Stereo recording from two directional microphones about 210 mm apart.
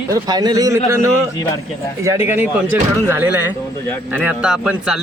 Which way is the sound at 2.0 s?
15° right (ahead or behind).